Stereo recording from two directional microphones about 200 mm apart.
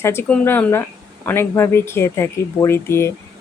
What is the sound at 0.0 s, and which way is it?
Speech, 10° left (ahead or behind).